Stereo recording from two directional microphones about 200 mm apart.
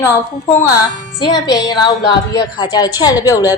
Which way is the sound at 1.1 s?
20° left (ahead or behind).